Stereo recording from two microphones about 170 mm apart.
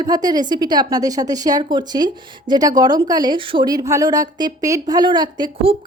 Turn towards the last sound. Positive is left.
turn(degrees=-30)  # may be behind; listen again after turning